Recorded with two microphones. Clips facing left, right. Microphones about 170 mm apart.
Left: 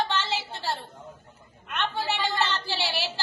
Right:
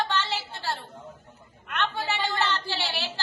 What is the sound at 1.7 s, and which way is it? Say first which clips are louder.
Speech: even; 15° left (ahead or behind).